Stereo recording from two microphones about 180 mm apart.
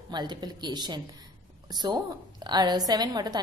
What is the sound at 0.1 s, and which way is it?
A woman's voice, 25° right (ahead or behind).